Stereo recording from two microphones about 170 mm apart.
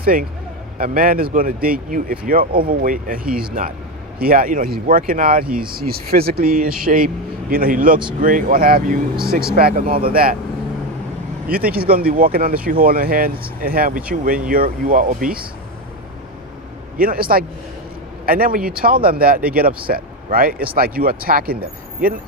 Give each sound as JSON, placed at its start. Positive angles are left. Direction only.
{"t": 0.0, "sound": "a man's voice", "side_deg": -60}
{"t": 11.4, "sound": "speech", "side_deg": -60}
{"t": 17.0, "sound": "speech", "side_deg": -60}